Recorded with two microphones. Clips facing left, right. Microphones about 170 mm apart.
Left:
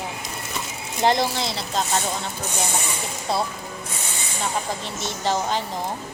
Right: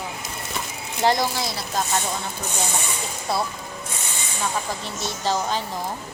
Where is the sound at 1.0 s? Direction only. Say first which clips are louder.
Left 1 dB; 25° left (ahead or behind).